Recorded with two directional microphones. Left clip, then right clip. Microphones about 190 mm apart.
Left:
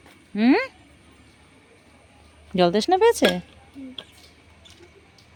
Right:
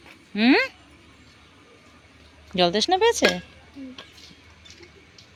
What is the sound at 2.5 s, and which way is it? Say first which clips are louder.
Speech: left 1 dB; 30° left (ahead or behind).